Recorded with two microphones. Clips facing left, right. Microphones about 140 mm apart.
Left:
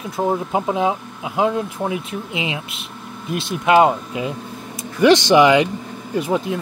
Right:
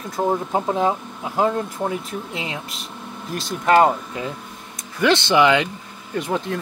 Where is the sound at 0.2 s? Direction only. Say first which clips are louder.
Left 1 dB; 5° left (ahead or behind).